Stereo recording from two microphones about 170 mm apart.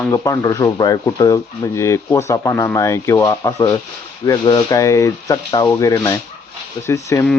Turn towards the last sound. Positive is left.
turn(degrees=15)  # may be behind; listen again after turning